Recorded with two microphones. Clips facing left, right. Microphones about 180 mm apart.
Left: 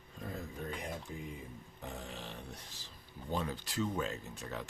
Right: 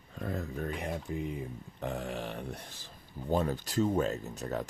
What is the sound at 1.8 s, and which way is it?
Speech, 65° right (ahead or behind).